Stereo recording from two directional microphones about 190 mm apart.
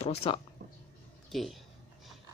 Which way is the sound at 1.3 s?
Centre (ahead or behind).